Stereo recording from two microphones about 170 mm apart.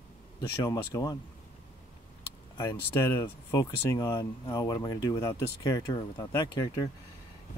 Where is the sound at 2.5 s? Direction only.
20° left (ahead or behind).